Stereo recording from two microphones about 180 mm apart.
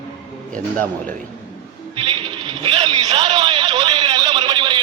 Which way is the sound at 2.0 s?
30° right (ahead or behind).